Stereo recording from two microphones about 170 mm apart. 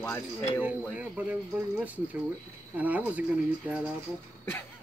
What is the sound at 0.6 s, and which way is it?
Speech, 10° right (ahead or behind).